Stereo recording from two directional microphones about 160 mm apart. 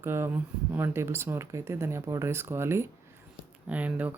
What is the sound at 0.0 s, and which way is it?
Speech, 15° right (ahead or behind).